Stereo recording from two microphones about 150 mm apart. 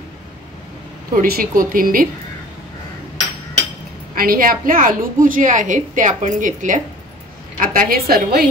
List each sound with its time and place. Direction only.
1.1 s a woman's voice: 80° right
4.1 s a woman's voice: 70° right (ahead or behind); by 8.5 s 90° right